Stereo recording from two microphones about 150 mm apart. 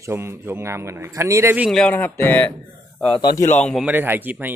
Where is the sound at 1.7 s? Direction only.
5° left (ahead or behind).